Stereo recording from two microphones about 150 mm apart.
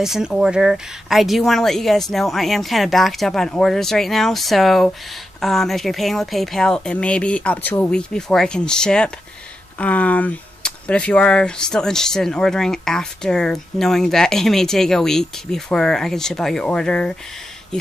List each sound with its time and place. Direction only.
0.0 s speech: 5° right (ahead or behind)